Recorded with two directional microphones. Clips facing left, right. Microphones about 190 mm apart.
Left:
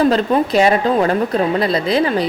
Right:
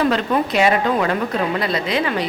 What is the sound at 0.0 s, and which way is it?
A woman's voice, 35° left (ahead or behind).